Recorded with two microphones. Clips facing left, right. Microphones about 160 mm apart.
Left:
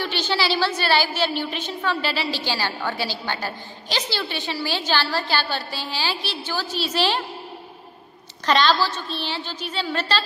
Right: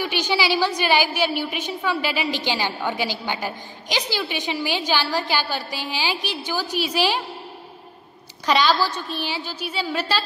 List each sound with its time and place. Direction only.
0.0 s a woman's voice: 15° right (ahead or behind)
8.5 s a woman's voice: 10° right (ahead or behind)